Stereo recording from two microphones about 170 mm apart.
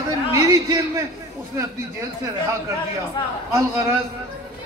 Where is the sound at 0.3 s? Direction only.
20° right (ahead or behind).